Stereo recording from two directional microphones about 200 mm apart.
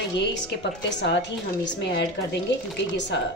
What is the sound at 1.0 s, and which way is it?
A woman's voice, 60° left (ahead or behind).